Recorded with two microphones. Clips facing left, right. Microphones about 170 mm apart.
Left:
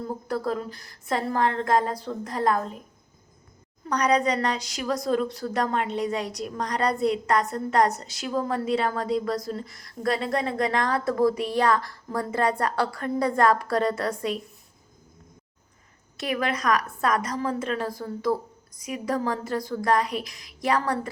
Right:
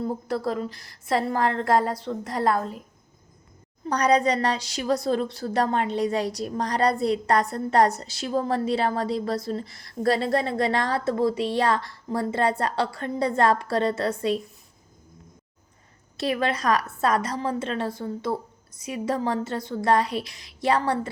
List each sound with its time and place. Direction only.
0.3 s a woman's voice: 30° right (ahead or behind)
3.8 s a woman's voice: 30° right (ahead or behind)
16.1 s a woman's voice: 30° right (ahead or behind)